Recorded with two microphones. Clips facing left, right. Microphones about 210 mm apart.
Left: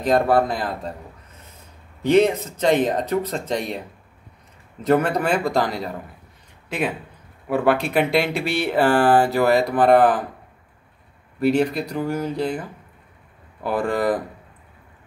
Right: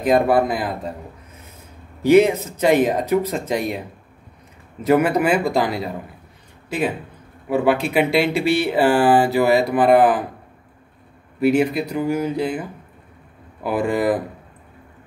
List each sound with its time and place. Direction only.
0.0 s speech: 10° right (ahead or behind)
2.0 s speech: 5° right (ahead or behind)
4.8 s speech: 5° right (ahead or behind)
7.4 s speech: centre (ahead or behind)
11.4 s speech: 5° right (ahead or behind)